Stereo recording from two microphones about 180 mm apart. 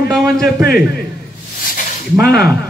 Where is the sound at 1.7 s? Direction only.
60° left (ahead or behind).